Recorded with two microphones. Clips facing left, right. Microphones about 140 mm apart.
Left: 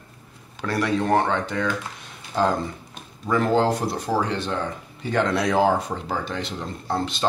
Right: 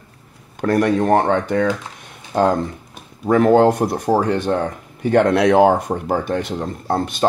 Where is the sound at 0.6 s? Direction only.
50° right (ahead or behind).